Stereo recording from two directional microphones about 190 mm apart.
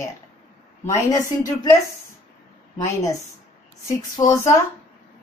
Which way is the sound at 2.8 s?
15° left (ahead or behind).